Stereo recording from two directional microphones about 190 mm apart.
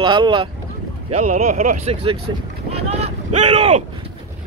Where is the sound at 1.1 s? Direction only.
35° right (ahead or behind).